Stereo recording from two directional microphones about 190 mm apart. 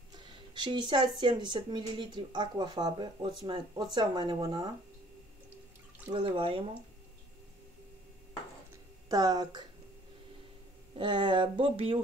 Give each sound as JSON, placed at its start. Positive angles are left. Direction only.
{"t": 0.1, "sound": "speech", "side_deg": -25}
{"t": 6.1, "sound": "speech", "side_deg": -25}
{"t": 9.1, "sound": "speech", "side_deg": -20}
{"t": 11.0, "sound": "speech", "side_deg": -25}